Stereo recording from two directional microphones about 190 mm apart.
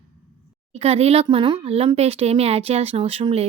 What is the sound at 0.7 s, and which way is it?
Speech, 35° right (ahead or behind).